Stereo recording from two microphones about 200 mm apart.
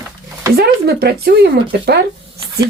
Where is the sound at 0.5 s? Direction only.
50° right (ahead or behind).